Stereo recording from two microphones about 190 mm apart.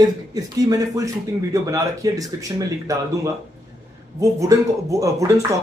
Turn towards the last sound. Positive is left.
turn(degrees=-15)  # may be behind; listen again after turning